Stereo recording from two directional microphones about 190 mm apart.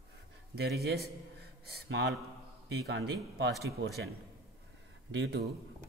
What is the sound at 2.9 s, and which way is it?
Speech, 65° right (ahead or behind).